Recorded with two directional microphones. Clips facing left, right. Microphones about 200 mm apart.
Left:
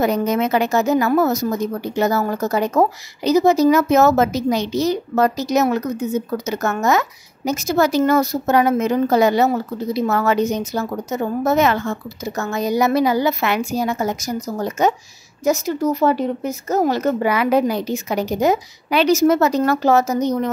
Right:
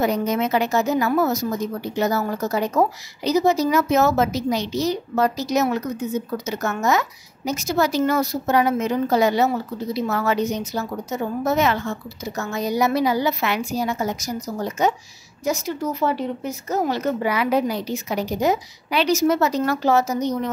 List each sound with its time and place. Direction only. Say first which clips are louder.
0.0 s a woman's voice: left 3 dB; 50° left (ahead or behind)